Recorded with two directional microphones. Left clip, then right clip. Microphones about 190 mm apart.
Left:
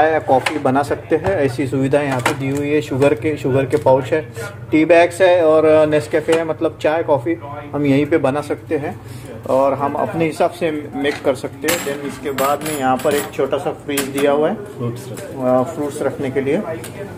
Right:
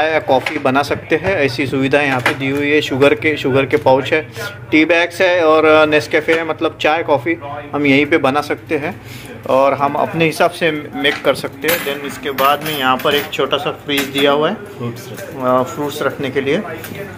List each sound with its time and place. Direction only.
0.0 s speech: 10° left (ahead or behind)